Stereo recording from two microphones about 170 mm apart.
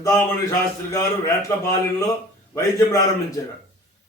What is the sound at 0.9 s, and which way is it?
A man's voice, 20° left (ahead or behind).